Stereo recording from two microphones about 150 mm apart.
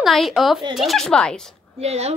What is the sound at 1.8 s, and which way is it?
Speech, 45° right (ahead or behind).